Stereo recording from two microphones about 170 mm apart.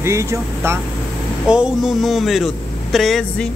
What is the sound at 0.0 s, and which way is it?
Speech, 15° right (ahead or behind).